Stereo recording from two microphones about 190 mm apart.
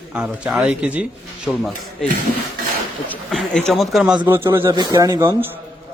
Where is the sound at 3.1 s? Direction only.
5° left (ahead or behind); by 5.4 s 15° right (ahead or behind).